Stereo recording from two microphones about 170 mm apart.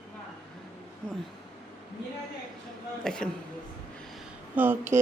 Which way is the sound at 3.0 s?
5° left (ahead or behind).